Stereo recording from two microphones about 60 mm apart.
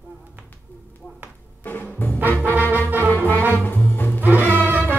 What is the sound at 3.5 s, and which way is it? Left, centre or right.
Music, left.